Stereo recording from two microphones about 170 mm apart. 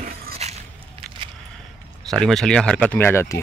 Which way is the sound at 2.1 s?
Centre (ahead or behind).